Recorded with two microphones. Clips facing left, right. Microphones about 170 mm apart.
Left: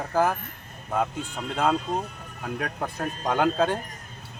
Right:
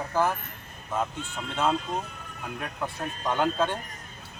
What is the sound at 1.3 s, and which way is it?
Speech, 40° left (ahead or behind).